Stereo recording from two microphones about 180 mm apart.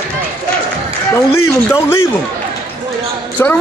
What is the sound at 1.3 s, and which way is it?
Speech, 15° left (ahead or behind).